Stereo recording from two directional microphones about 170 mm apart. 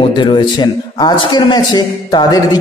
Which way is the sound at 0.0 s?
30° left (ahead or behind).